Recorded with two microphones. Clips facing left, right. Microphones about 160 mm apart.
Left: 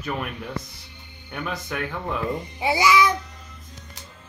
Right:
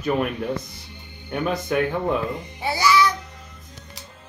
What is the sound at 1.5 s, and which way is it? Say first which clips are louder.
Speech: right 8 dB; 20° right (ahead or behind).